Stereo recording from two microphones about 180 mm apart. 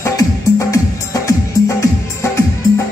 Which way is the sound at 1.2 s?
15° left (ahead or behind).